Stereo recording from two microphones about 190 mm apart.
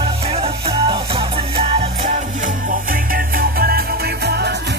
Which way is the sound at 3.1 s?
55° right (ahead or behind).